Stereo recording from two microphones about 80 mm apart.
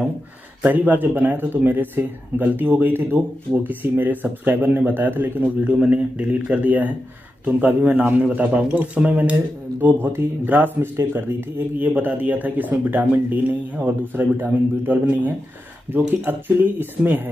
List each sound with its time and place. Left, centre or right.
0.6 s a man's voice: right
15.9 s speech: centre
17.0 s a man's voice: right